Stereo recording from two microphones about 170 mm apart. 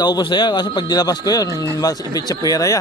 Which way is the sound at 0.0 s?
25° left (ahead or behind).